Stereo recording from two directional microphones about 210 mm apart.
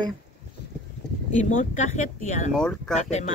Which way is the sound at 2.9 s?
35° left (ahead or behind).